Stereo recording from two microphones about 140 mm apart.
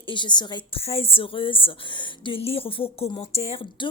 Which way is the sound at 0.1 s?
35° left (ahead or behind).